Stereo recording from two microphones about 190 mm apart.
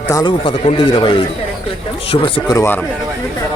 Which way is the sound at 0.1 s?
20° left (ahead or behind).